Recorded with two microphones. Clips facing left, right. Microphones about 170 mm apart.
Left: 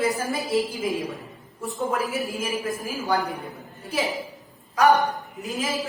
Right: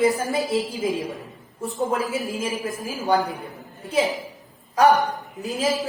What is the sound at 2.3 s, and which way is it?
Speech, 20° right (ahead or behind).